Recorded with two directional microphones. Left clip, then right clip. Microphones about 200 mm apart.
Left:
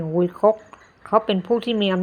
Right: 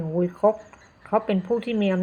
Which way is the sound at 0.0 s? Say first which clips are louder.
Left 3 dB; 30° left (ahead or behind).